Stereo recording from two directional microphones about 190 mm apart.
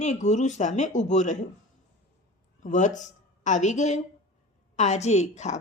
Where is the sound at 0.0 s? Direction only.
40° left (ahead or behind).